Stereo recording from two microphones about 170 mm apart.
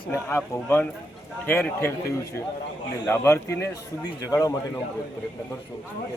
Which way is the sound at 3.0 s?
15° left (ahead or behind).